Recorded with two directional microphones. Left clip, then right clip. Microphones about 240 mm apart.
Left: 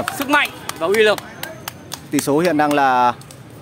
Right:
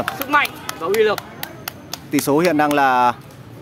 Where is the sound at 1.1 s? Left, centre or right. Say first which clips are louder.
Left 2 dB; right.